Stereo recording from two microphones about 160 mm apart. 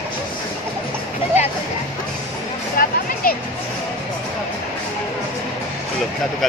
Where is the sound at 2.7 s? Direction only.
70° left (ahead or behind).